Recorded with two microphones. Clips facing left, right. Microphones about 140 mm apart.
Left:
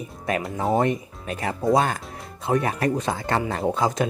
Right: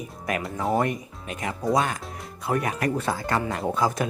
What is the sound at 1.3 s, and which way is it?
Speech, 35° left (ahead or behind).